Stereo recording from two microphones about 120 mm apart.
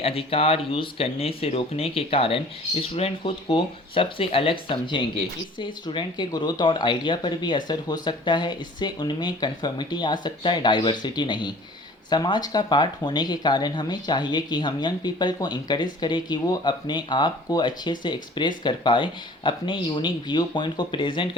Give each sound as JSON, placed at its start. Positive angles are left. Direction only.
{"t": 0.0, "sound": "speech", "side_deg": 55}